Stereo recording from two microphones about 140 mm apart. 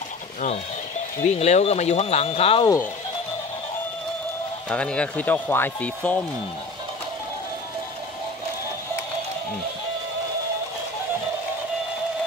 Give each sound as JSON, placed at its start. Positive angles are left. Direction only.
{"t": 1.2, "sound": "speech", "side_deg": 50}
{"t": 4.6, "sound": "speech", "side_deg": 10}